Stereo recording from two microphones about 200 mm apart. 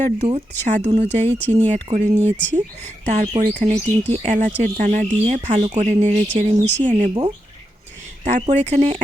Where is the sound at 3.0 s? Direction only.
35° right (ahead or behind).